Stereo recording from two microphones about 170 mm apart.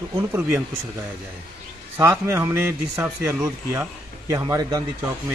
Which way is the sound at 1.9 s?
15° right (ahead or behind).